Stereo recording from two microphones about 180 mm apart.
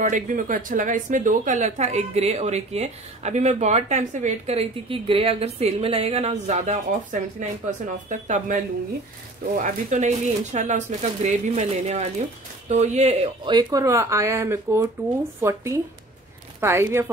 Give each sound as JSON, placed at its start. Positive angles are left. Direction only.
{"t": 0.0, "sound": "speech", "side_deg": -45}
{"t": 9.6, "sound": "speech", "side_deg": -40}
{"t": 13.5, "sound": "speech", "side_deg": -25}